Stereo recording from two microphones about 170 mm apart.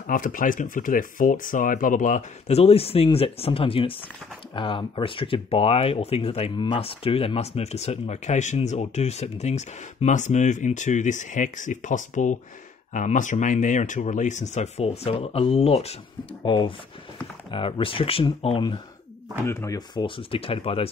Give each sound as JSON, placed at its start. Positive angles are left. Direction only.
{"t": 0.0, "sound": "speech", "side_deg": 50}
{"t": 19.4, "sound": "speech", "side_deg": 15}
{"t": 20.2, "sound": "speech", "side_deg": 35}